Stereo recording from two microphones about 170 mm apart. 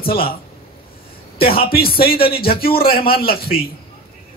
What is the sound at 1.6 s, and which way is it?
A man's voice, 65° left (ahead or behind).